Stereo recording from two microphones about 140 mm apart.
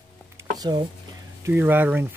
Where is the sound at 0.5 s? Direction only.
30° right (ahead or behind).